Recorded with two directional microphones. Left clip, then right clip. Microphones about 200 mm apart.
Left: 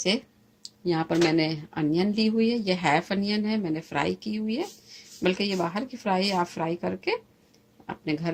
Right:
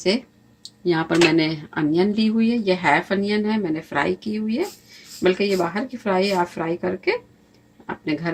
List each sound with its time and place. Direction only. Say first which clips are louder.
0.9 s speech: right 6 dB; 25° left (ahead or behind)